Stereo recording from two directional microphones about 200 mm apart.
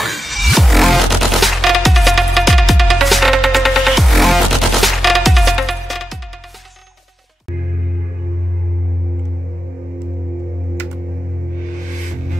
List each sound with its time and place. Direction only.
0.0 s music: centre (ahead or behind)